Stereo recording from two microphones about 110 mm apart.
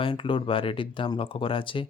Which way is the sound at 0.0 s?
50° left (ahead or behind).